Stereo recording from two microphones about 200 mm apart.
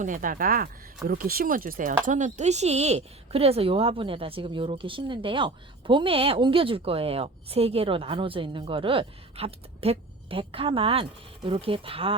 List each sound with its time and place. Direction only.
0.0 s speech: 40° right (ahead or behind); by 12.1 s 25° right (ahead or behind)